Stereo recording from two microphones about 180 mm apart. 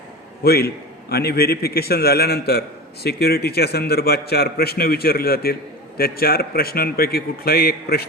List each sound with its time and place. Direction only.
0.4 s a man's voice: 60° left (ahead or behind)